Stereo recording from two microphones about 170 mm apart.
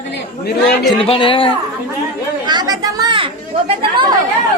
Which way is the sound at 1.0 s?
30° left (ahead or behind).